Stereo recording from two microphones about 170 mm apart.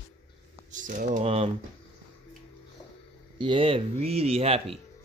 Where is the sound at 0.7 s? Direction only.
50° right (ahead or behind).